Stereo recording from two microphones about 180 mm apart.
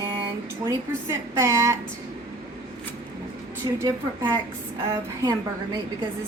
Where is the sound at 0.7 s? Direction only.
15° right (ahead or behind).